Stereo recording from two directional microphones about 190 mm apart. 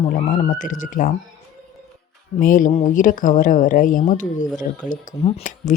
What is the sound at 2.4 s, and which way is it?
A woman's voice, 45° left (ahead or behind).